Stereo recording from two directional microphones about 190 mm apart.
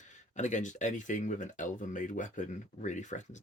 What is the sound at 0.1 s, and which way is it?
Speech, 40° left (ahead or behind).